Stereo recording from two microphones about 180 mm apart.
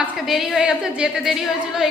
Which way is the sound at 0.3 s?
Centre (ahead or behind).